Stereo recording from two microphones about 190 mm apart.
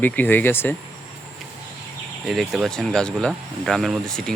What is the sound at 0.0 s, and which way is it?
Speech, 10° left (ahead or behind).